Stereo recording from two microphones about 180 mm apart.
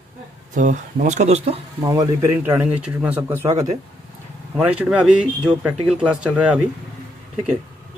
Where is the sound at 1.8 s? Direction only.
20° right (ahead or behind).